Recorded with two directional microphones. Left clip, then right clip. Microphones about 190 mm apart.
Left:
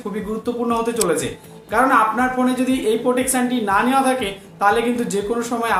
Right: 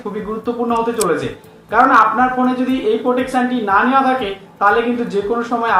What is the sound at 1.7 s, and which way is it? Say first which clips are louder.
Speech: right 5 dB; 25° left (ahead or behind).